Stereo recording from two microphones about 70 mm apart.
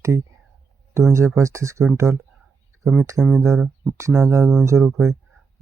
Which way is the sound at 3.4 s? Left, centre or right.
Right.